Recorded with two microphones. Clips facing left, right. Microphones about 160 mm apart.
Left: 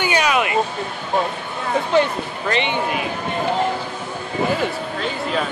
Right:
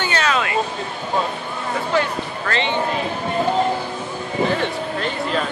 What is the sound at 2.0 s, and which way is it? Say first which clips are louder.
Speech: left 4 dB; 15° left (ahead or behind).